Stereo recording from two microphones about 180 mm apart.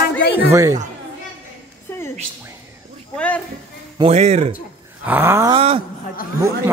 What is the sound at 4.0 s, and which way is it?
Speech, 35° right (ahead or behind).